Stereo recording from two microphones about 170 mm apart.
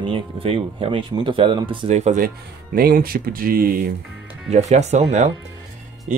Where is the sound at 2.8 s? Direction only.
60° right (ahead or behind).